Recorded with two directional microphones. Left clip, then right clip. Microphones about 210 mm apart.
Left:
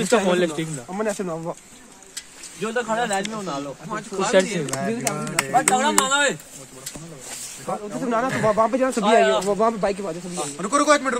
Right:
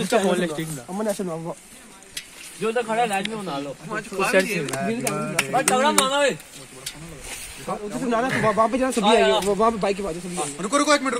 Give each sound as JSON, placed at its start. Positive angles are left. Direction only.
{"t": 0.1, "sound": "speech", "side_deg": 50}
{"t": 1.1, "sound": "speech", "side_deg": -15}
{"t": 2.6, "sound": "speech", "side_deg": -20}
{"t": 4.2, "sound": "speech", "side_deg": 55}
{"t": 4.6, "sound": "speech", "side_deg": -5}
{"t": 7.6, "sound": "speech", "side_deg": -25}
{"t": 8.3, "sound": "speech", "side_deg": 0}
{"t": 8.5, "sound": "speech", "side_deg": -20}
{"t": 10.4, "sound": "speech", "side_deg": -10}